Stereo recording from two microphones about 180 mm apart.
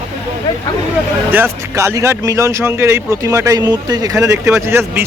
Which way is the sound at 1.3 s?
15° right (ahead or behind).